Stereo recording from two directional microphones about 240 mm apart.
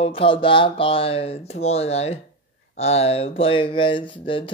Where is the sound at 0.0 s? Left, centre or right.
Left.